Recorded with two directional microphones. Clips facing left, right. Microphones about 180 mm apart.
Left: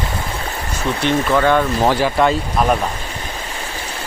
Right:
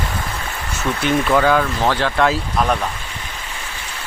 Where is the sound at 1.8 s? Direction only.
10° left (ahead or behind).